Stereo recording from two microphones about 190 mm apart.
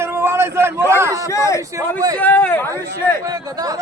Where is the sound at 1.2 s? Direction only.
15° left (ahead or behind).